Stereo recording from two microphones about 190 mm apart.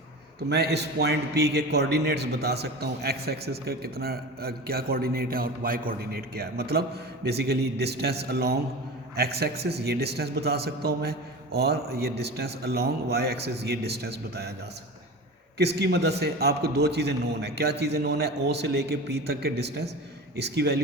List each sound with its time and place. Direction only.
0.3 s a man's voice: 60° right (ahead or behind)
15.5 s a man's voice: 60° right (ahead or behind)